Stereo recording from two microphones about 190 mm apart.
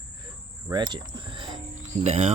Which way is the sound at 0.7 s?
25° right (ahead or behind).